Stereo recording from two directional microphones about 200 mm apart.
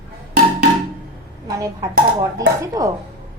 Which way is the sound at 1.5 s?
15° right (ahead or behind).